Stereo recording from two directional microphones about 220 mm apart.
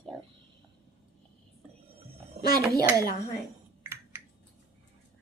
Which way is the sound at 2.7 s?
15° right (ahead or behind).